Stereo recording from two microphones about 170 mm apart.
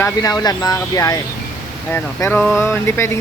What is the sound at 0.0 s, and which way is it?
Speech, 20° left (ahead or behind).